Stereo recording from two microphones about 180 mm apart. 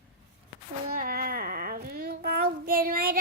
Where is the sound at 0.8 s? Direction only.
55° right (ahead or behind).